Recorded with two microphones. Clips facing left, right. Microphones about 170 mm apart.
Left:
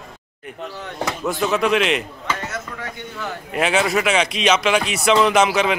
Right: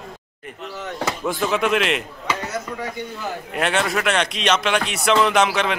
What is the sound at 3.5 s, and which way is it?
Speech, centre (ahead or behind).